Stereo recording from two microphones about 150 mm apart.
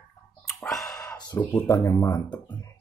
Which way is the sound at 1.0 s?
25° left (ahead or behind).